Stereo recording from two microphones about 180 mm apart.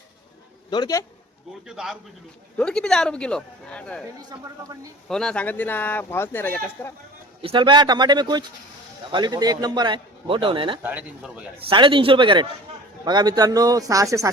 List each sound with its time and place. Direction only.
0.7 s a man's voice: 20° left (ahead or behind)
1.6 s speech: 5° right (ahead or behind)
4.3 s a man's voice: 20° right (ahead or behind)
5.0 s speech: 5° left (ahead or behind)
7.4 s a man's voice: 25° right (ahead or behind)
10.8 s speech: 5° right (ahead or behind)
11.7 s a man's voice: 25° right (ahead or behind)